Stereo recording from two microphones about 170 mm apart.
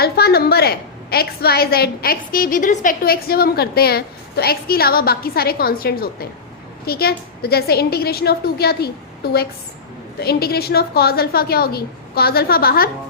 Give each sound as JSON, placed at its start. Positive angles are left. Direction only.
{"t": 0.0, "sound": "a woman's voice", "side_deg": 65}